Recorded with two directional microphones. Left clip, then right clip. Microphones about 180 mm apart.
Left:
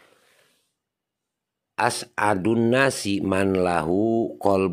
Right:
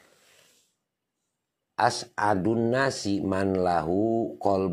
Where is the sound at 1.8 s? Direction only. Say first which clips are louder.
Left 2 dB; 25° left (ahead or behind).